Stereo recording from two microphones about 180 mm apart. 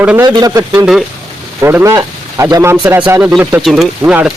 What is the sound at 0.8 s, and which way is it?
Speech, centre (ahead or behind).